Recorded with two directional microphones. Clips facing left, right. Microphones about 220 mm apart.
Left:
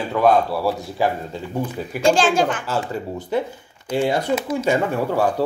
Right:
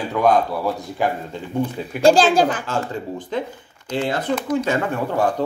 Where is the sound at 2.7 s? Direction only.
10° left (ahead or behind).